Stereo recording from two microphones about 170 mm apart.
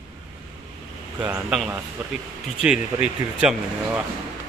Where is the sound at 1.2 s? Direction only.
10° right (ahead or behind).